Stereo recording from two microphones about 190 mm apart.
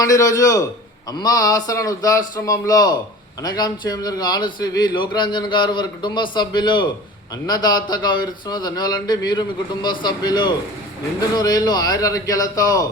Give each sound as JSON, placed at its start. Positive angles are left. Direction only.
{"t": 0.0, "sound": "a man's voice", "side_deg": 15}